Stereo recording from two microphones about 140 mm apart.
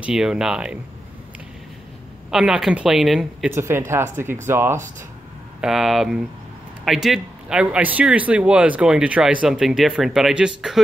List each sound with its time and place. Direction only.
0.0 s a man's voice: 5° right (ahead or behind)
2.3 s a man's voice: 5° right (ahead or behind)
3.4 s speech: 15° right (ahead or behind)
5.6 s a man's voice: centre (ahead or behind)